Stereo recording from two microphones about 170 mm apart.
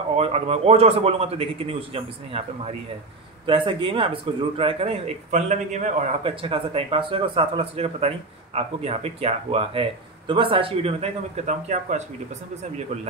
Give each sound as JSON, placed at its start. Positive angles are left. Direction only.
{"t": 0.1, "sound": "speech", "side_deg": -35}
{"t": 6.2, "sound": "speech", "side_deg": -30}